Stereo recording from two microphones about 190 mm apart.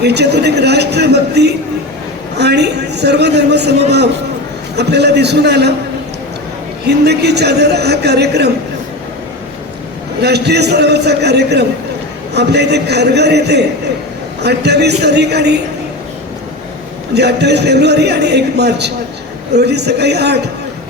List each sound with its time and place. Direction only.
0.0 s a man's voice: 60° right (ahead or behind)
4.8 s a man's voice: 60° right (ahead or behind)
6.8 s a man's voice: 60° right (ahead or behind)
10.2 s a man's voice: 60° right (ahead or behind)
17.2 s a man's voice: 60° right (ahead or behind)